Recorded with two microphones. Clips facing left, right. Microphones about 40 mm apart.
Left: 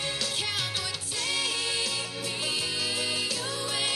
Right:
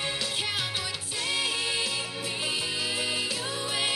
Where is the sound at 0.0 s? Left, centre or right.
Centre.